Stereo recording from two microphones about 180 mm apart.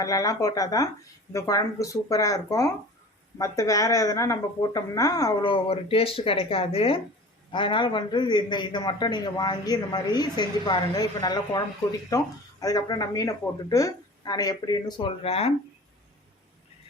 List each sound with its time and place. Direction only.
0.0 s a man's voice: 20° left (ahead or behind)